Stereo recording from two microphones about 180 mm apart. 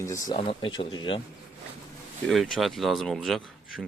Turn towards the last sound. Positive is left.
turn(degrees=0)  # may be behind; listen again after turning